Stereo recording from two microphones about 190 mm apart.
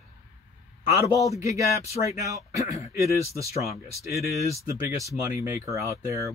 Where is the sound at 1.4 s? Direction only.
35° left (ahead or behind).